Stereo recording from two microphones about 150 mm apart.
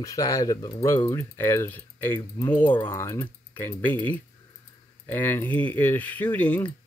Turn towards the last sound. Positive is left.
turn(degrees=10)  # may be behind; listen again after turning